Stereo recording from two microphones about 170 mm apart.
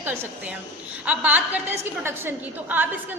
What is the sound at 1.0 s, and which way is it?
Speech, 10° right (ahead or behind).